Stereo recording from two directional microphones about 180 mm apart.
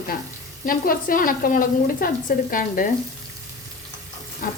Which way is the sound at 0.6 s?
50° left (ahead or behind).